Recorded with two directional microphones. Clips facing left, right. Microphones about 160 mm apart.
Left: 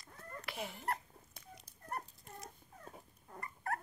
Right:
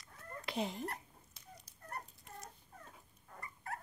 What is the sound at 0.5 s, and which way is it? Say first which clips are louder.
Speech: right 7 dB; 20° right (ahead or behind).